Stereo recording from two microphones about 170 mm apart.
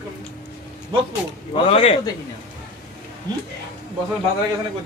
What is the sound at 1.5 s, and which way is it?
Speech, 35° left (ahead or behind).